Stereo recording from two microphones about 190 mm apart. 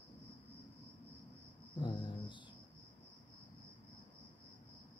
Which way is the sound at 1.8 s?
25° left (ahead or behind).